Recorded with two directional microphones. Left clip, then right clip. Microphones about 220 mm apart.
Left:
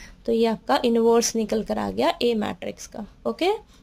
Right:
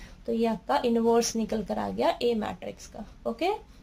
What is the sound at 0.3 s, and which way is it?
A woman's voice, 40° left (ahead or behind).